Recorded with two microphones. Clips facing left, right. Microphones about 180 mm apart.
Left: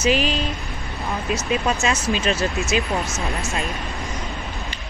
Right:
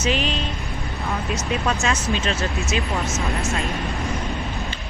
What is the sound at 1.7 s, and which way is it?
Speech, 15° left (ahead or behind).